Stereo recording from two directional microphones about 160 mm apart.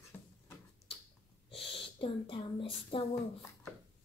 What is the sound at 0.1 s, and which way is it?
Tick-tock, 15° left (ahead or behind).